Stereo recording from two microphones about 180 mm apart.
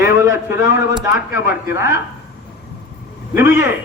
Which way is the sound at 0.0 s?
15° right (ahead or behind).